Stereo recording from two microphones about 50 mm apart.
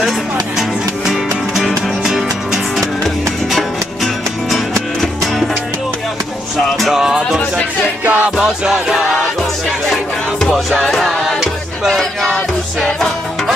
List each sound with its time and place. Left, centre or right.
0.6 s music: centre
3.5 s music: centre
6.9 s music: centre
8.0 s music: right
8.5 s music: centre
10.5 s music: centre